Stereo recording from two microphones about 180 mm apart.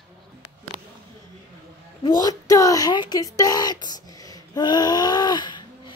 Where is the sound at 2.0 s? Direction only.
20° left (ahead or behind).